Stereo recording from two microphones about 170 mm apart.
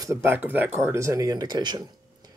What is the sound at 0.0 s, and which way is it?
Speech, 15° right (ahead or behind).